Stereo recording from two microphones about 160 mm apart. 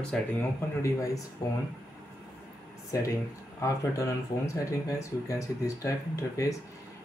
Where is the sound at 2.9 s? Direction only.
20° left (ahead or behind).